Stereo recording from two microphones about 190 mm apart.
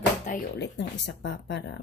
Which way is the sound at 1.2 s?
65° left (ahead or behind).